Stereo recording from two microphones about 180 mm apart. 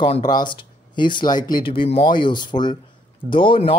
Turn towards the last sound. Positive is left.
turn(degrees=30)  # may be behind; listen again after turning